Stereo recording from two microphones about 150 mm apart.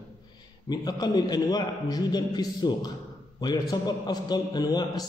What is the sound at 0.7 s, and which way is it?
A man's voice, 25° left (ahead or behind).